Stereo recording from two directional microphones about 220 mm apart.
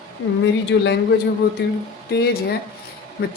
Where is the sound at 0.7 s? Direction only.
55° left (ahead or behind).